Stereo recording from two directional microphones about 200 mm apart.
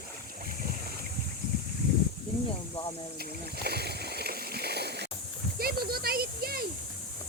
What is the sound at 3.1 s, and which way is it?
Splash, 50° right (ahead or behind).